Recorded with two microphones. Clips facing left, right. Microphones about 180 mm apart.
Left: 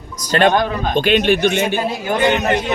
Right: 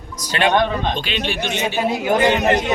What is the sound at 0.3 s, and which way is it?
Speech, 45° left (ahead or behind).